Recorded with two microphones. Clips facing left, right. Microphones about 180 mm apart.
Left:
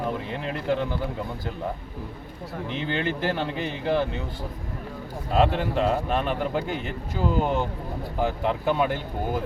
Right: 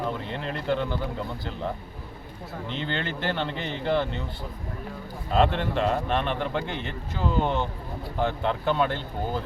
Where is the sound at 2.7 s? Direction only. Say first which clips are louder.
Left 3 dB; 5° left (ahead or behind).